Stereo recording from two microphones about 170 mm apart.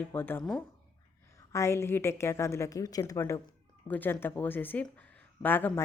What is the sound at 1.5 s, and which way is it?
Speech, 15° left (ahead or behind).